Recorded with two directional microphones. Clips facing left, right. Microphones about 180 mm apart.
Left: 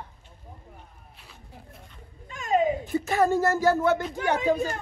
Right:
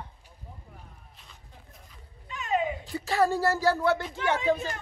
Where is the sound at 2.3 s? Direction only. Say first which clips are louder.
Left 5 dB; 40° left (ahead or behind).